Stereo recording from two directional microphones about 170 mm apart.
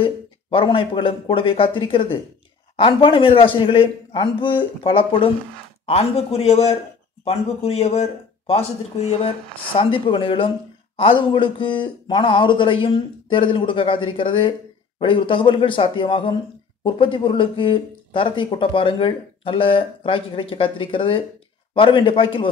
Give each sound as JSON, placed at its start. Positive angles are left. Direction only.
{"t": 0.0, "sound": "speech", "side_deg": 30}